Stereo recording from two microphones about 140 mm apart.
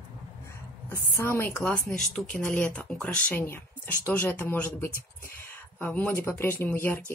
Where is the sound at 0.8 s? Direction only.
15° left (ahead or behind).